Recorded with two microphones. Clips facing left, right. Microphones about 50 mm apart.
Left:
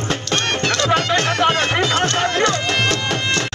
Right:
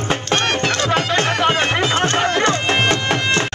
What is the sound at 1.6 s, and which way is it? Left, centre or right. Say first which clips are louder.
Music: even; right.